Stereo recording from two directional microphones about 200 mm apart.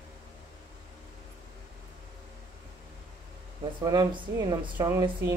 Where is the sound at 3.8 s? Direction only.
20° right (ahead or behind).